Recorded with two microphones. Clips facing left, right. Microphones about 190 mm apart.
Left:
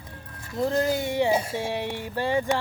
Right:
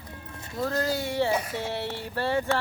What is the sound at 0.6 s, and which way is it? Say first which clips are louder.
Mantra: left 4 dB; 20° left (ahead or behind).